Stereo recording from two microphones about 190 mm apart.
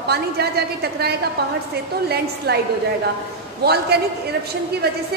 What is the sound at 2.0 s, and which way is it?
Speech, 60° right (ahead or behind).